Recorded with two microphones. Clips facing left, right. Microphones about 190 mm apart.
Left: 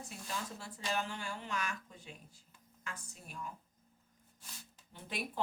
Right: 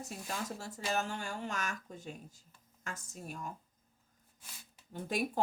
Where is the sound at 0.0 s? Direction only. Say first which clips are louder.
Right 3 dB; 45° right (ahead or behind).